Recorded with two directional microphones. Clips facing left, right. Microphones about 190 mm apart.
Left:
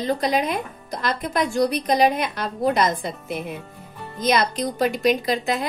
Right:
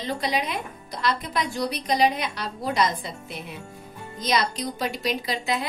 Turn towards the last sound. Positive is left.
turn(degrees=50)  # may be behind; listen again after turning